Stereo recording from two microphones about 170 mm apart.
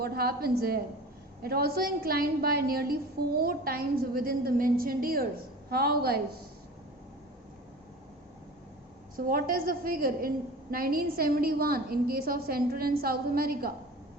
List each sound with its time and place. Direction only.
0.0 s a woman's voice: 65° right (ahead or behind)
9.1 s a woman's voice: 55° right (ahead or behind)